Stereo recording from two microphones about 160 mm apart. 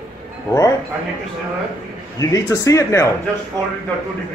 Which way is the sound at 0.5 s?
20° left (ahead or behind).